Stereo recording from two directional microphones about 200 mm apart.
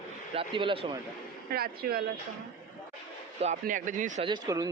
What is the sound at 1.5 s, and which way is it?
Speech, 50° right (ahead or behind).